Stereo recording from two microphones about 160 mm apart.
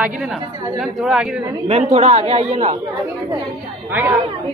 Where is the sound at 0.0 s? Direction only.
5° right (ahead or behind).